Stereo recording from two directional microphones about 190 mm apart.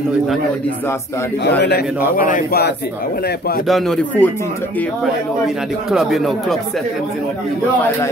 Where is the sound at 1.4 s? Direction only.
60° left (ahead or behind).